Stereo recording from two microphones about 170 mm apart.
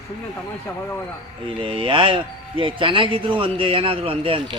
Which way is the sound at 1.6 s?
30° right (ahead or behind).